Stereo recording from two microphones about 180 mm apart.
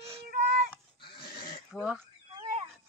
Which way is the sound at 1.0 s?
25° left (ahead or behind).